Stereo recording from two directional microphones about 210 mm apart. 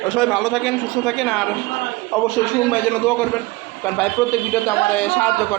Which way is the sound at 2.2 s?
10° left (ahead or behind).